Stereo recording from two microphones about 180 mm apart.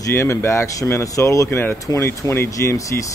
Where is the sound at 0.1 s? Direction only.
15° left (ahead or behind).